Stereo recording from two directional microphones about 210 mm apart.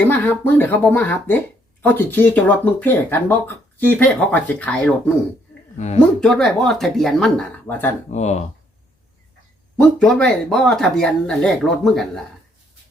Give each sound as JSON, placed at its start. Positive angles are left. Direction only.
{"t": 0.0, "sound": "speech", "side_deg": 10}
{"t": 5.7, "sound": "a woman's voice", "side_deg": 35}
{"t": 6.1, "sound": "speech", "side_deg": 5}
{"t": 8.1, "sound": "speech", "side_deg": 30}
{"t": 9.7, "sound": "speech", "side_deg": 5}